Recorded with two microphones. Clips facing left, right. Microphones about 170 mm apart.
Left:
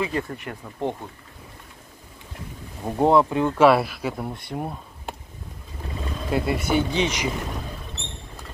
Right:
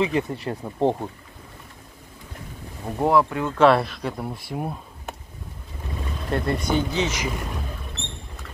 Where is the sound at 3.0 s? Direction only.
20° left (ahead or behind).